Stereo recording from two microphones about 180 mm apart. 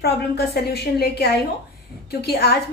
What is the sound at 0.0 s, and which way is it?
A woman's voice, 65° left (ahead or behind).